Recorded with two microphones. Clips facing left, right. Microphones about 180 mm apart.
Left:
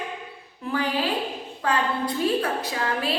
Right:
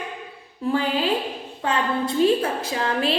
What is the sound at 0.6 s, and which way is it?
A woman's voice, 25° right (ahead or behind).